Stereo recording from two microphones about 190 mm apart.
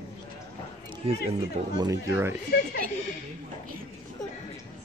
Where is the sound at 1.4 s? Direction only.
20° right (ahead or behind).